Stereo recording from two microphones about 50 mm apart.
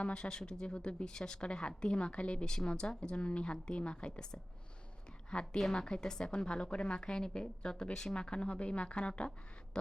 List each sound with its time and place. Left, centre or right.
0.0 s speech: centre
5.5 s speech: centre